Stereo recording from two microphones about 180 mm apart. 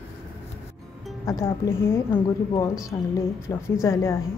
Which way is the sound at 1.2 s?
15° left (ahead or behind).